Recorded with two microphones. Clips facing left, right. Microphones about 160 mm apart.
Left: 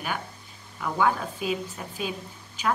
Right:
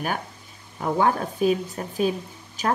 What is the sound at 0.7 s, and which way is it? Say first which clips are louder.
Speech: right 3 dB; 40° right (ahead or behind).